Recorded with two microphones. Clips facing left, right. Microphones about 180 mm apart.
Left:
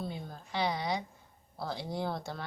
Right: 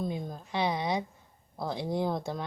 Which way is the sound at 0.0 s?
15° right (ahead or behind).